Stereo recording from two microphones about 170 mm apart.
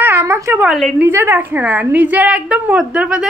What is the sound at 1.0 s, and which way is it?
A woman's voice, 10° right (ahead or behind).